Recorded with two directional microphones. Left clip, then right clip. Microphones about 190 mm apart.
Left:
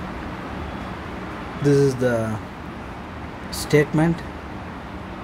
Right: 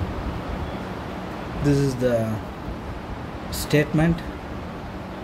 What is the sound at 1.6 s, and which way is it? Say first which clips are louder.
Speech: left 4 dB; 10° left (ahead or behind).